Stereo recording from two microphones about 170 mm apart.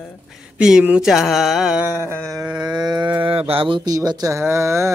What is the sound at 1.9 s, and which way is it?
Speech, 15° left (ahead or behind).